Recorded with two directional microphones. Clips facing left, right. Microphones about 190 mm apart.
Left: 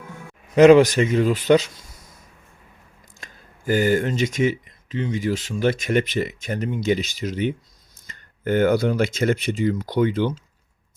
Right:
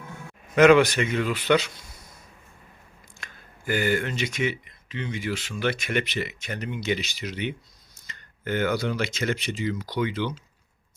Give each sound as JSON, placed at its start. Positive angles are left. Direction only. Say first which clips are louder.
{"t": 0.5, "sound": "speech", "louder": "left 5 dB", "side_deg": 35}
{"t": 3.2, "sound": "speech", "louder": "left 1 dB", "side_deg": 40}